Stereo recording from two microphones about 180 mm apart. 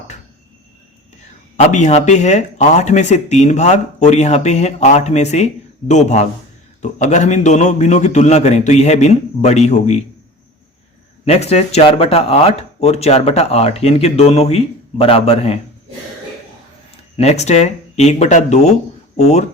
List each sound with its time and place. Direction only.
1.5 s speech: 40° left (ahead or behind)
11.3 s speech: 35° left (ahead or behind)
17.2 s speech: 35° left (ahead or behind)